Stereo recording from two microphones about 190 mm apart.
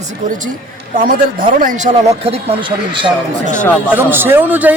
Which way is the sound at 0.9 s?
50° right (ahead or behind).